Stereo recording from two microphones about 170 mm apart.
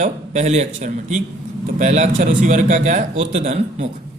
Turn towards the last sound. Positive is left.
turn(degrees=-40)  # may be behind; listen again after turning